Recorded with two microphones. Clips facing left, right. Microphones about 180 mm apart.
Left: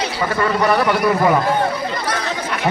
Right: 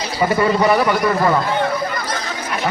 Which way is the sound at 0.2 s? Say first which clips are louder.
Right 4 dB; 15° right (ahead or behind).